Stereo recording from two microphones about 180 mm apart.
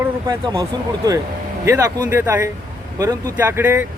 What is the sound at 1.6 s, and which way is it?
Speech, 15° right (ahead or behind).